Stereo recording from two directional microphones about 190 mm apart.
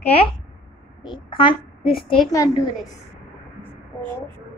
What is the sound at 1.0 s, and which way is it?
A child's voice, 25° left (ahead or behind).